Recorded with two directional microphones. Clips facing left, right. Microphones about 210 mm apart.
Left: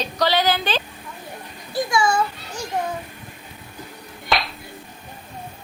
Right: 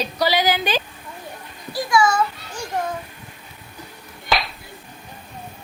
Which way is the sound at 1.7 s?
25° left (ahead or behind).